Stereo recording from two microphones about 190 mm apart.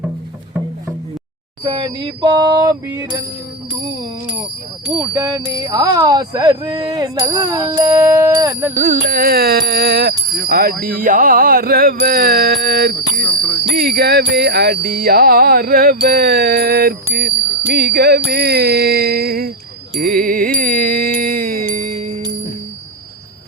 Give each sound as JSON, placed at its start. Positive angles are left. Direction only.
{"t": 1.6, "sound": "speech", "side_deg": -25}
{"t": 5.1, "sound": "speech", "side_deg": -20}
{"t": 8.8, "sound": "music", "side_deg": -45}